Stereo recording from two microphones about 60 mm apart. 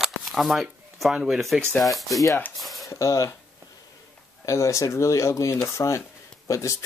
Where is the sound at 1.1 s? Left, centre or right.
Centre.